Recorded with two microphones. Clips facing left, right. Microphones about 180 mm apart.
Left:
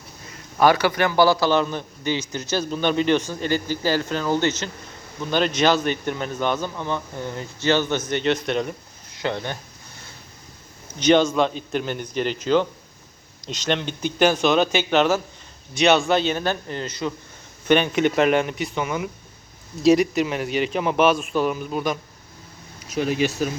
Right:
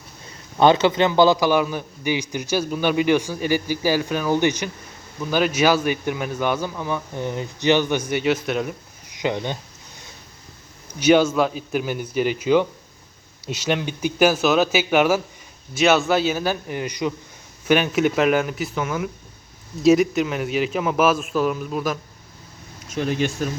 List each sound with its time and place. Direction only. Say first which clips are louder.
0.6 s a man's voice: right 2 dB; 20° right (ahead or behind); by 8.7 s 5° right (ahead or behind)
9.1 s speech: right 2 dB; 15° right (ahead or behind)
10.9 s a man's voice: right 1 dB; 10° right (ahead or behind)